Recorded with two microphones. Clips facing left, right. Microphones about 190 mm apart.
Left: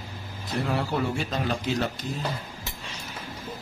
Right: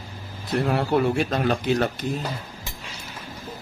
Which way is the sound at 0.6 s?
55° right (ahead or behind).